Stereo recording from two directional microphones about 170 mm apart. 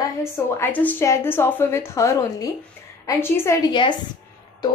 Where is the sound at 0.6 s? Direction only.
10° left (ahead or behind).